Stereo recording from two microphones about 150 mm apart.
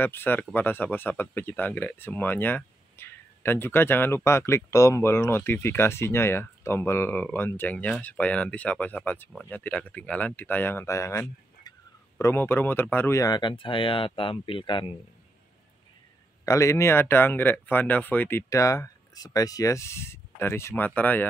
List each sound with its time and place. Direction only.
0.0 s speech: 15° left (ahead or behind); by 15.0 s 35° left (ahead or behind)
16.4 s speech: 20° left (ahead or behind)